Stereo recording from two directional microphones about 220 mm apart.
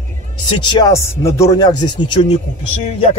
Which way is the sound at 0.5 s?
20° left (ahead or behind).